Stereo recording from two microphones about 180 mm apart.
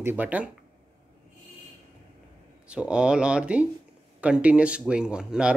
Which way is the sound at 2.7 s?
5° right (ahead or behind).